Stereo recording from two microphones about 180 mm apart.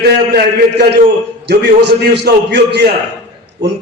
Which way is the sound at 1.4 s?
65° right (ahead or behind).